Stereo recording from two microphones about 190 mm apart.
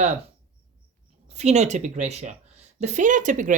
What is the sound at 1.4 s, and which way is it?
Speech, 35° right (ahead or behind).